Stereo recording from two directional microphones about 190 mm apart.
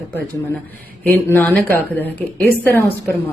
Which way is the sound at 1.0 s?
10° left (ahead or behind).